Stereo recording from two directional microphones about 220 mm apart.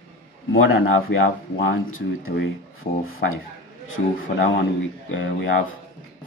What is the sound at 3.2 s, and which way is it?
Speech, 50° left (ahead or behind).